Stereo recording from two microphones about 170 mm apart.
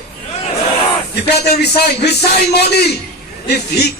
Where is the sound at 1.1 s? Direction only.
75° left (ahead or behind).